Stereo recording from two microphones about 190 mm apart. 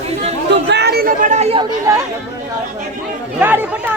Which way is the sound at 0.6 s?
60° right (ahead or behind).